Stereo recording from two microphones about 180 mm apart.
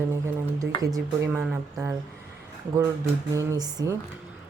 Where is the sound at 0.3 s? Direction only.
15° right (ahead or behind).